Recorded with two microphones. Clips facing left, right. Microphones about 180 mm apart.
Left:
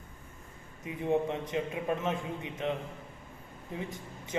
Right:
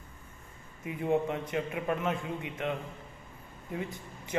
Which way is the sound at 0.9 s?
20° left (ahead or behind).